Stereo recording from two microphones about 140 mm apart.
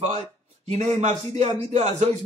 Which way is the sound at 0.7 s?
55° right (ahead or behind).